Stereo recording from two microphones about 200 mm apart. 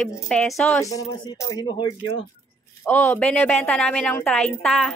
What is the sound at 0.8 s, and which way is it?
Speech, 15° left (ahead or behind).